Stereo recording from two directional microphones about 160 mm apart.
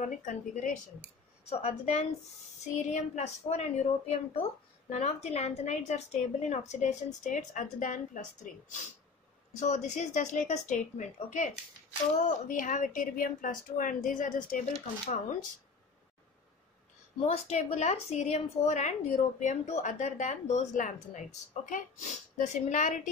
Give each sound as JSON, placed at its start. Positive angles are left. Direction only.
{"t": 0.0, "sound": "a woman's voice", "side_deg": 50}
{"t": 1.5, "sound": "a woman's voice", "side_deg": 40}
{"t": 17.2, "sound": "a woman's voice", "side_deg": 40}